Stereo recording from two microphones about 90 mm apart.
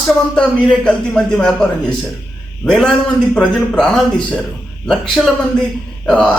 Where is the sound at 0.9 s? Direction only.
10° left (ahead or behind).